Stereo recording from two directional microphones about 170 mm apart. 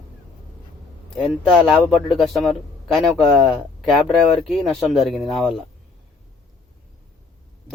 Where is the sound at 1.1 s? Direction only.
Centre (ahead or behind).